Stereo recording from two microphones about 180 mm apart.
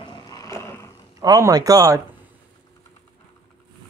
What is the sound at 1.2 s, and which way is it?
Speech, 20° right (ahead or behind).